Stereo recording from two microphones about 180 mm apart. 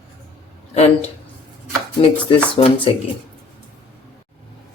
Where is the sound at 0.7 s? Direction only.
35° left (ahead or behind).